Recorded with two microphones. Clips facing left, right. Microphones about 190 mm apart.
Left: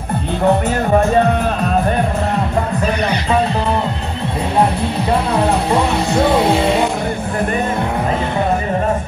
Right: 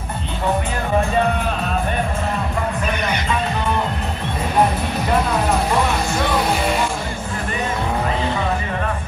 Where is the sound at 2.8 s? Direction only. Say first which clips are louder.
Left 5 dB; 35° left (ahead or behind).